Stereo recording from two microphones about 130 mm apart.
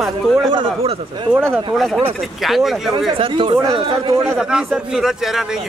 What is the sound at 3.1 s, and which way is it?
Speech, 40° right (ahead or behind).